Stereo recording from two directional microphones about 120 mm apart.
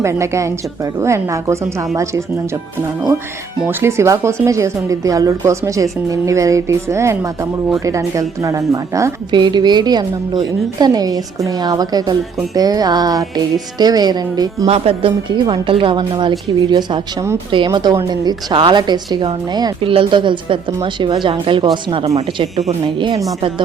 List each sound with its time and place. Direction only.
0.0 s speech: 25° right (ahead or behind)
3.7 s speech: 20° right (ahead or behind)
9.3 s a woman's voice: 40° right (ahead or behind)
14.7 s a woman's voice: 50° right (ahead or behind)
22.0 s a woman's voice: 50° right (ahead or behind)